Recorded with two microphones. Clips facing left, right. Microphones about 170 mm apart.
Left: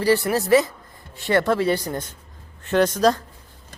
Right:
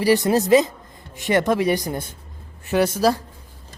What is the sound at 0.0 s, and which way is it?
A man's voice, 15° right (ahead or behind).